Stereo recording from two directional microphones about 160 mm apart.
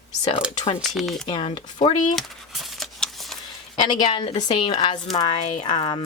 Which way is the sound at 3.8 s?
25° left (ahead or behind).